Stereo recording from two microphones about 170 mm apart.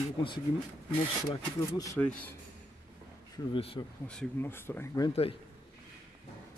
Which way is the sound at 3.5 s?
35° left (ahead or behind).